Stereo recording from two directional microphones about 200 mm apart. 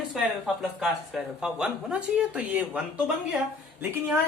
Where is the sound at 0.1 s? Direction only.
Centre (ahead or behind).